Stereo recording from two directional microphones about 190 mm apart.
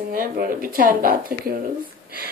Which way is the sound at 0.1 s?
45° right (ahead or behind).